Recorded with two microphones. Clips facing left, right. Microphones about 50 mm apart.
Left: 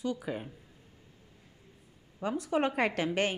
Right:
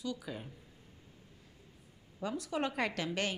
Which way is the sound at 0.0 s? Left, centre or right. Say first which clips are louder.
Left 6 dB; left.